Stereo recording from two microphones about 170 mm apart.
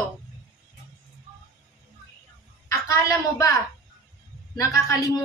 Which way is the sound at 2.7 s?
20° left (ahead or behind).